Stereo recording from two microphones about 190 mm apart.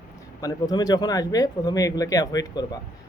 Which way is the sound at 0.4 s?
20° left (ahead or behind).